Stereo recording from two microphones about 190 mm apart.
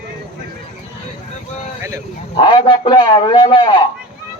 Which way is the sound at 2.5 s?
25° left (ahead or behind).